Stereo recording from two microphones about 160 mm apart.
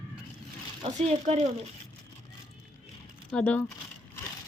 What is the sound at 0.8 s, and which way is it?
Speech, 45° right (ahead or behind).